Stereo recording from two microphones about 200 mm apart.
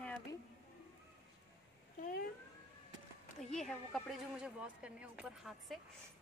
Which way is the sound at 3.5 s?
5° left (ahead or behind).